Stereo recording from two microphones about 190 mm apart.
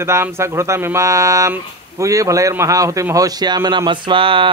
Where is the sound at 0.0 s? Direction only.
15° right (ahead or behind).